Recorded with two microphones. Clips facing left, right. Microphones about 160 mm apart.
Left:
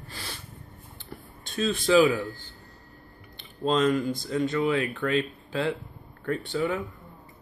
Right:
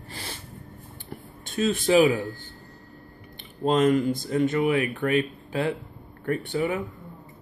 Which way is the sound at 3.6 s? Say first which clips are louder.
Right 3 dB; 55° right (ahead or behind).